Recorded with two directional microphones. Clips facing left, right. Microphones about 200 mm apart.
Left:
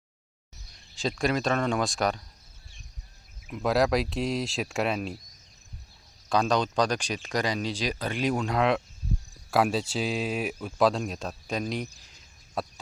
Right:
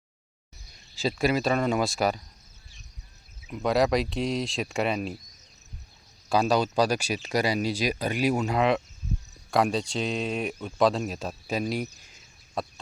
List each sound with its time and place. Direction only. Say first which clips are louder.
0.9 s speech: right 2 dB; 5° right (ahead or behind)
3.5 s speech: right 1 dB; centre (ahead or behind)
6.2 s speech: right 2 dB; 5° right (ahead or behind)